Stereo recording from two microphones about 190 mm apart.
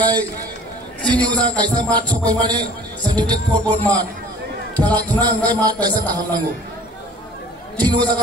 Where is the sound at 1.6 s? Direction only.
20° right (ahead or behind).